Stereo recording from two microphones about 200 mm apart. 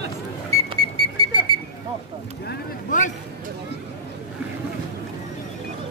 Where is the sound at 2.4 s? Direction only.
40° left (ahead or behind).